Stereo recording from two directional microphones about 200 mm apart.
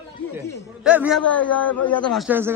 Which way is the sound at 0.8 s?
5° right (ahead or behind).